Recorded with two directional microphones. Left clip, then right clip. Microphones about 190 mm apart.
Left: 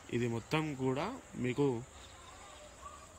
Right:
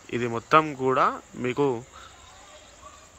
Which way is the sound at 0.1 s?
5° left (ahead or behind).